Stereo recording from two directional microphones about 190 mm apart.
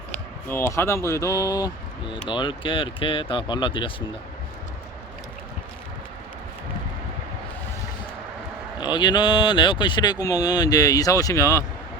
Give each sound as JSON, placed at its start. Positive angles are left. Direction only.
{"t": 0.4, "sound": "speech", "side_deg": 10}
{"t": 8.8, "sound": "speech", "side_deg": 25}